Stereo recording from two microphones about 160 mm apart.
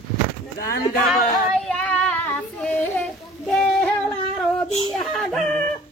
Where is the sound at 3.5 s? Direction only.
5° left (ahead or behind).